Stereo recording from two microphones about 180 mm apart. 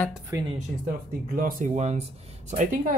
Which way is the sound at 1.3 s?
45° right (ahead or behind).